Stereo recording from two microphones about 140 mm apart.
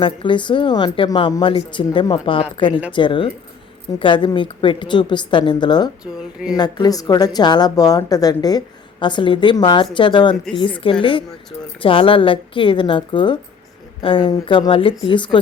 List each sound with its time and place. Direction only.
0.0 s a woman's voice: 35° left (ahead or behind)